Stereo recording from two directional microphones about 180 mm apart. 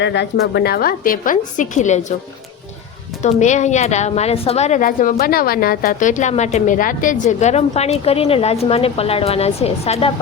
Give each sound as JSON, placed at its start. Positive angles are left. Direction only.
{"t": 0.0, "sound": "a woman's voice", "side_deg": 70}
{"t": 3.2, "sound": "speech", "side_deg": 40}